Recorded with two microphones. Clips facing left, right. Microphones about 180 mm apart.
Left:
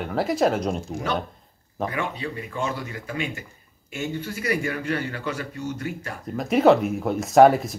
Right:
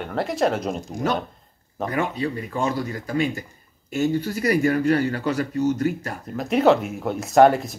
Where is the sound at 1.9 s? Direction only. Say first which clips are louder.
Right 9 dB; 40° right (ahead or behind).